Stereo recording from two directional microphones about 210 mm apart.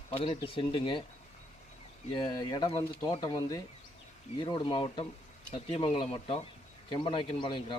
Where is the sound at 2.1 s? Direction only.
20° left (ahead or behind).